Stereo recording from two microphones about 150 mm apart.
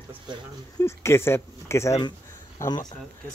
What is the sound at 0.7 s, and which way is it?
Speech, 20° left (ahead or behind).